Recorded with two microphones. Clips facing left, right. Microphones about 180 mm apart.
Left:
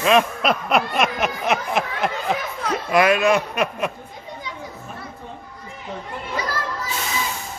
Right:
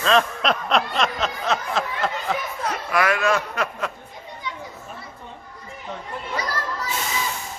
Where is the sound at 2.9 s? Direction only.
20° left (ahead or behind).